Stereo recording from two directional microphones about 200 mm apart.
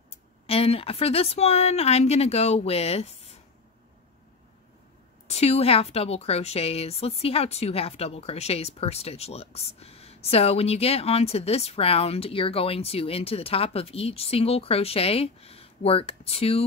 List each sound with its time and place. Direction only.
0.1 s speech: 30° left (ahead or behind)
5.3 s a woman's voice: 30° left (ahead or behind)